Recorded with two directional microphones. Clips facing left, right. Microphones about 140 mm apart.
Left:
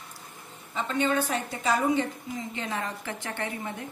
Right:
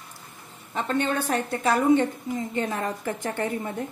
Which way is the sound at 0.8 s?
55° right (ahead or behind).